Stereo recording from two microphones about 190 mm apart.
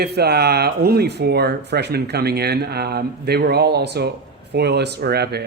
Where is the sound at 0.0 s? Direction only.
60° right (ahead or behind).